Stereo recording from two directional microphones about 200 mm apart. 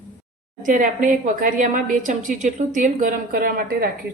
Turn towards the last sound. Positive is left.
turn(degrees=-50)  # may be behind; listen again after turning